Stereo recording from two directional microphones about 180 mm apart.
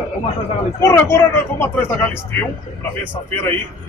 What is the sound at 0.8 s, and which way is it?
Speech, 15° left (ahead or behind).